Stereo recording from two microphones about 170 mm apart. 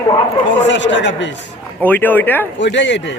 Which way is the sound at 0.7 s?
90° left.